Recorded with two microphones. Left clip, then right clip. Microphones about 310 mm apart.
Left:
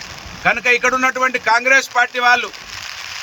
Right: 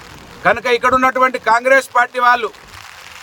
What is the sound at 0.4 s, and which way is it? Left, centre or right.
Speech, centre.